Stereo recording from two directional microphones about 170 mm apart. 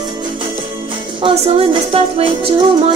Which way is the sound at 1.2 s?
35° right (ahead or behind).